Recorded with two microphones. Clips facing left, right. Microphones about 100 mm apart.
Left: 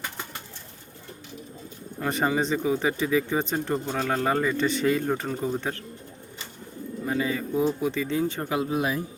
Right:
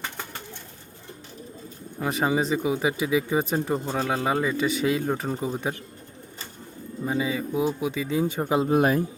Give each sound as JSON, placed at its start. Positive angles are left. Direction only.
{"t": 2.0, "sound": "speech", "side_deg": -5}
{"t": 7.0, "sound": "bird", "side_deg": -20}
{"t": 7.3, "sound": "speech", "side_deg": -10}
{"t": 8.7, "sound": "speech", "side_deg": -50}